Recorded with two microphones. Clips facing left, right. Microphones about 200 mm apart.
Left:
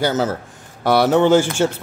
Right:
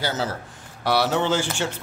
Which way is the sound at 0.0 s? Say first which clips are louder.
Left 7 dB; 50° left (ahead or behind).